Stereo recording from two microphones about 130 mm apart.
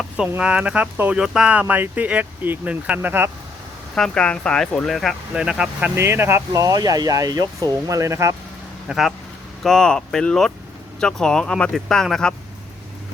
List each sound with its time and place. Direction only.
0.3 s speech: 10° right (ahead or behind)
3.9 s speech: 5° left (ahead or behind)
6.0 s speech: 20° right (ahead or behind)
8.9 s speech: 5° right (ahead or behind)